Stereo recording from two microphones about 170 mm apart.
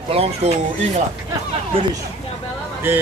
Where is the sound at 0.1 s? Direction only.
35° right (ahead or behind).